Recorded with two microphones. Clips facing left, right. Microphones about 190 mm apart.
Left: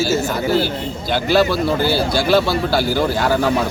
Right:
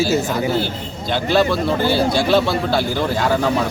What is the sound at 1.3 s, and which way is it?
A man's voice, 5° left (ahead or behind).